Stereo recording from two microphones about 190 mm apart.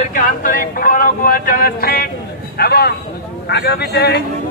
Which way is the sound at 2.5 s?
55° left (ahead or behind).